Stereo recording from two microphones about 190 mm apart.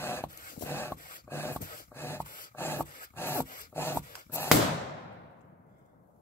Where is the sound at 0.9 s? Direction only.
45° left (ahead or behind).